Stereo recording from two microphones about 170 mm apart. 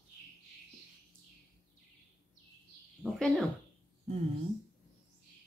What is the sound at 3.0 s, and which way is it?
Speech, centre (ahead or behind).